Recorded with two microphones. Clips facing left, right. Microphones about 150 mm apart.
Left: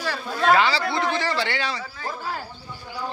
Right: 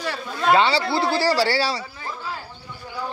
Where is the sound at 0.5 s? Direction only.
30° right (ahead or behind).